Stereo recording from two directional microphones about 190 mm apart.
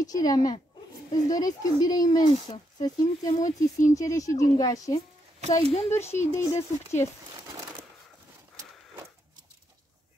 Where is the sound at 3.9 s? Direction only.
15° left (ahead or behind).